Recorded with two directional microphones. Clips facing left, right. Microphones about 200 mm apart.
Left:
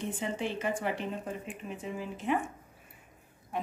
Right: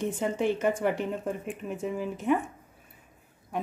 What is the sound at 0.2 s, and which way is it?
Speech, 50° right (ahead or behind).